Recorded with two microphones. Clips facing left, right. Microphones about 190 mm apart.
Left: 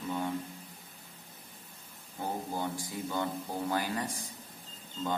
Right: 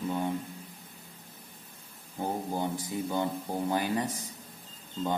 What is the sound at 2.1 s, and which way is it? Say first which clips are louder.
A man's voice: right 3 dB; 20° right (ahead or behind).